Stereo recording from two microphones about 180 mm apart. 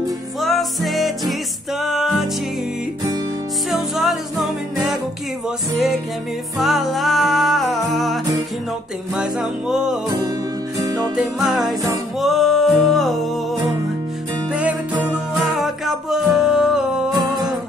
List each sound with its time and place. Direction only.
0.4 s music: centre (ahead or behind)
3.9 s music: centre (ahead or behind)
6.6 s music: centre (ahead or behind)
10.8 s music: 20° right (ahead or behind)
11.1 s music: centre (ahead or behind)
14.5 s music: 10° right (ahead or behind)